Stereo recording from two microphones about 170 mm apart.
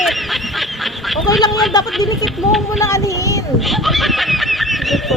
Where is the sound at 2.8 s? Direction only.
20° left (ahead or behind).